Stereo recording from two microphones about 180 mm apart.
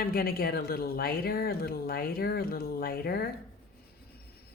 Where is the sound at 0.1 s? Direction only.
55° left (ahead or behind).